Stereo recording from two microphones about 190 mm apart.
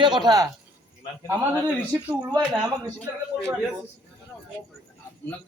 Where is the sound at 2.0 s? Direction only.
5° right (ahead or behind).